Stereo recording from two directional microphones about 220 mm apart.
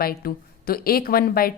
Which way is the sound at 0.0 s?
40° left (ahead or behind).